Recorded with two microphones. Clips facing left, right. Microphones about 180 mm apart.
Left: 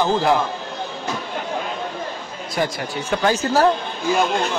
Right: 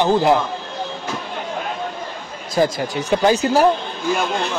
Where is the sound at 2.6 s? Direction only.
25° right (ahead or behind).